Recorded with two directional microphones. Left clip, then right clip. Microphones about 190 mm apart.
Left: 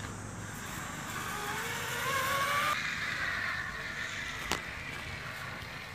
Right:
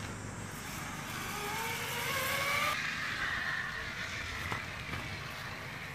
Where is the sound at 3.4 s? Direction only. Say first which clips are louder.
Left 1 dB; 30° left (ahead or behind).